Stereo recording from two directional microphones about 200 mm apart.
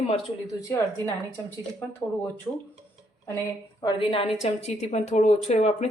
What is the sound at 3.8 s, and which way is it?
A woman's voice, 25° left (ahead or behind).